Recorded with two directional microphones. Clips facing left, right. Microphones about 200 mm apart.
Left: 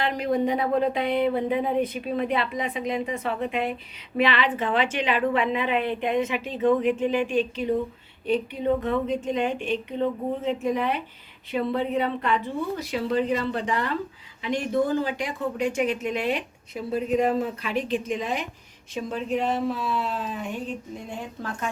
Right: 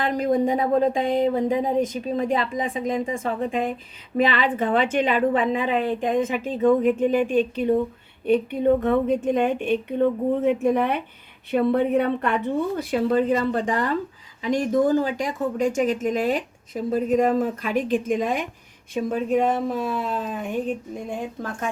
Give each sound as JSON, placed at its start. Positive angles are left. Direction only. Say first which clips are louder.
{"t": 0.0, "sound": "speech", "louder": "right 3 dB", "side_deg": -45}
{"t": 4.2, "sound": "a woman's voice", "louder": "right 2 dB", "side_deg": -45}